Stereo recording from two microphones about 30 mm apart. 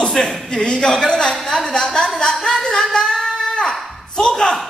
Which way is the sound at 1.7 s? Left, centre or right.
Left.